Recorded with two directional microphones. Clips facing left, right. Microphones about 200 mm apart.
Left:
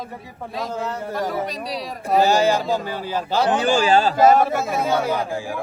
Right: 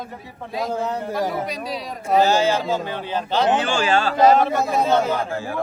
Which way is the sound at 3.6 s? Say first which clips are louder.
Left 3 dB; 40° left (ahead or behind).